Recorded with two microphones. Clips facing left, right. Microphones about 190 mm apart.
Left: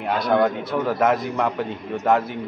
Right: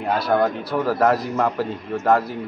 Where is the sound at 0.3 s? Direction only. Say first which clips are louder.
Left 1 dB; centre (ahead or behind).